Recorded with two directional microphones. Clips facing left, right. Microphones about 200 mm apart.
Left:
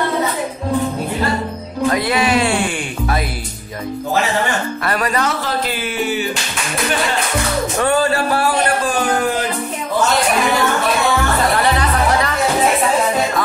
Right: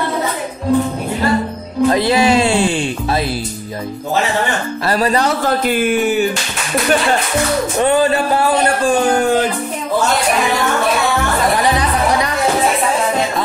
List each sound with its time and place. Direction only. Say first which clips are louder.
1.9 s music: right 3 dB; 25° right (ahead or behind)
4.8 s speech: right 5 dB; 30° right (ahead or behind)
5.4 s a sound: right 6 dB; 50° right (ahead or behind)
7.8 s music: right 3 dB; 20° right (ahead or behind)
11.6 s chatter: right 1 dB; 15° right (ahead or behind)